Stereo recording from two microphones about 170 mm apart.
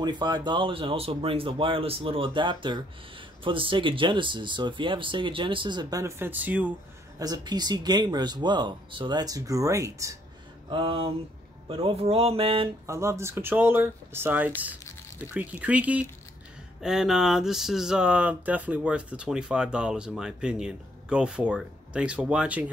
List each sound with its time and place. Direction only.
0.0 s speech: 25° right (ahead or behind); by 6.7 s 10° right (ahead or behind)
7.2 s speech: 25° right (ahead or behind)
10.7 s speech: 30° right (ahead or behind)
12.8 s speech: 15° right (ahead or behind)